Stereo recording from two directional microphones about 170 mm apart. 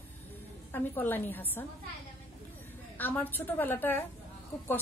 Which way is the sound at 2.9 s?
10° left (ahead or behind).